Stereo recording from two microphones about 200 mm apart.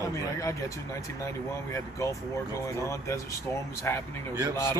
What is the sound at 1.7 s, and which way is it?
A man's voice, 15° left (ahead or behind).